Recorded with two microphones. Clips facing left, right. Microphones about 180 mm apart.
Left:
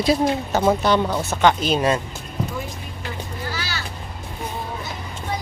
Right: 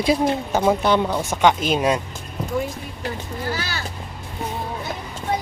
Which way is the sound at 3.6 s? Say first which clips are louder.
Right 1 dB; 50° right (ahead or behind).